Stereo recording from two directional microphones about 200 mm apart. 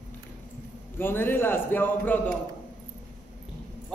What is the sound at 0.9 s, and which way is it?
A woman's voice, 10° left (ahead or behind).